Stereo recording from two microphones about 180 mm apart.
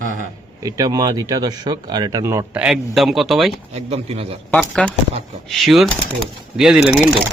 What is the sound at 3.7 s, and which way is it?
Speech, 35° right (ahead or behind).